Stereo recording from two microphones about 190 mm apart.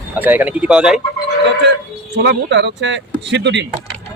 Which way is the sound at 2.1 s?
65° right (ahead or behind).